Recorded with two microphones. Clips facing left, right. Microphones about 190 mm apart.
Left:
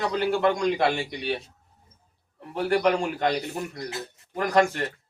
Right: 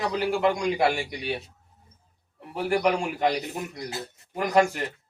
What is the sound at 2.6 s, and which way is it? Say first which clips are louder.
A man's voice: left 1 dB; 10° right (ahead or behind).